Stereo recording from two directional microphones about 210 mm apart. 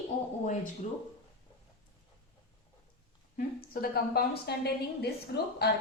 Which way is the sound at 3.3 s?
45° left (ahead or behind).